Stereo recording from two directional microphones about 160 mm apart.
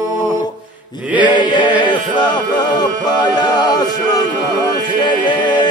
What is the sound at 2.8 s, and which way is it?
Music, 25° left (ahead or behind).